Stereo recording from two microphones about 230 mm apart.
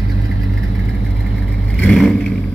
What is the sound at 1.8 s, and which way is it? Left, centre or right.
Vehicle, centre.